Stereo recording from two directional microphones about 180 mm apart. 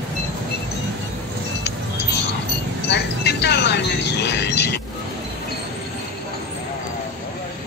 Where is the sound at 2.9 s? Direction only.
70° left (ahead or behind).